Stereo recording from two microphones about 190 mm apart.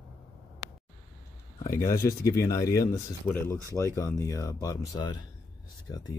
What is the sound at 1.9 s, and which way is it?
Speech, 15° left (ahead or behind).